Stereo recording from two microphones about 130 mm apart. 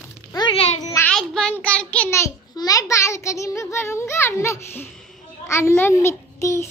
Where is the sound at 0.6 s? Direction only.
55° left (ahead or behind).